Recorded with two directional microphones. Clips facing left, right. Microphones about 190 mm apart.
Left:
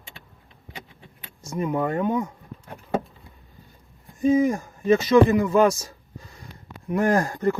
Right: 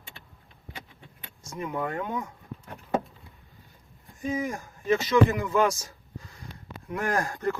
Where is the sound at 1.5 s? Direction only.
30° left (ahead or behind).